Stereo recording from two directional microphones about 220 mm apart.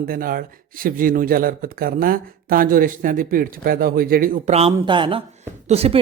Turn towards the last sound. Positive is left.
turn(degrees=-25)  # may be behind; listen again after turning